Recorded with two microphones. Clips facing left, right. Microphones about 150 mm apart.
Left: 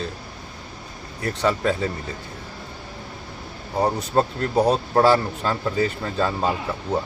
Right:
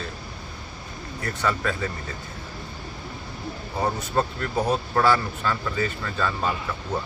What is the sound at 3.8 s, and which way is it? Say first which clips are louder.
Speech: left 4 dB; 35° left (ahead or behind).